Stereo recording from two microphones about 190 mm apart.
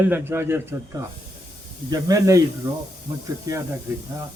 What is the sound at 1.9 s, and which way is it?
A man's voice, 20° right (ahead or behind).